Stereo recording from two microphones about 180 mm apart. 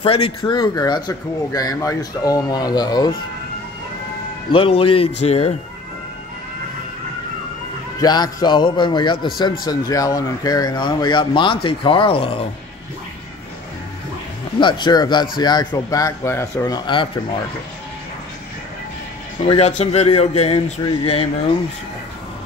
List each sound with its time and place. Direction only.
0.0 s a man's voice: 30° left (ahead or behind)
4.5 s speech: 30° left (ahead or behind)
8.0 s a man's voice: 20° left (ahead or behind)
14.6 s a man's voice: 25° left (ahead or behind)
19.4 s speech: 35° left (ahead or behind)